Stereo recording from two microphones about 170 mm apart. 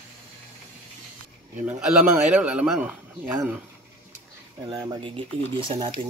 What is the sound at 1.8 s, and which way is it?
Speech, 5° right (ahead or behind).